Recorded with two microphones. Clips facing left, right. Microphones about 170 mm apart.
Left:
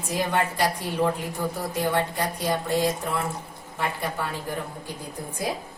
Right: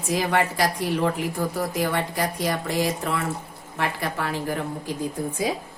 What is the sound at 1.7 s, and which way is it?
A woman's voice, 90° right.